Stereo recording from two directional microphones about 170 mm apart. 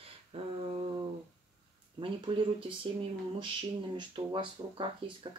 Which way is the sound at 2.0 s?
30° right (ahead or behind).